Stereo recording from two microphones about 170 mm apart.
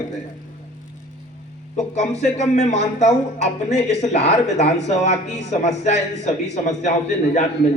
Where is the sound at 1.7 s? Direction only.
40° left (ahead or behind).